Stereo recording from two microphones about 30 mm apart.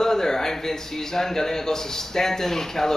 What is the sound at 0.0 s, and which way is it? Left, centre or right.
A man's voice, centre.